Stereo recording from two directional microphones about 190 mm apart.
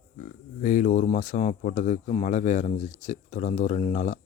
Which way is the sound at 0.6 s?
40° left (ahead or behind).